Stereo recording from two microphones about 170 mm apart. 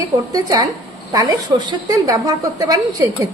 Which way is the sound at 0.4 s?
20° right (ahead or behind).